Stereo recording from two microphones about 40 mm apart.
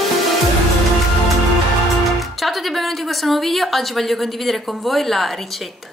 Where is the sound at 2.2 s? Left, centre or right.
Centre.